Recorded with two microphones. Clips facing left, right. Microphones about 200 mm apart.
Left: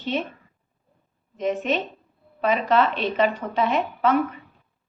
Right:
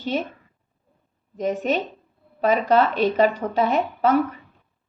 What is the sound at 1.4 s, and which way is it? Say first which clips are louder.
A woman's voice: right 1 dB; 40° right (ahead or behind).